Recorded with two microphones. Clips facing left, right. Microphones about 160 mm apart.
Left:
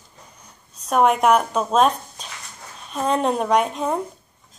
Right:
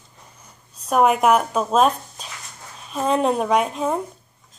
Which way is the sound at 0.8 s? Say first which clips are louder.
Even; 5° right (ahead or behind).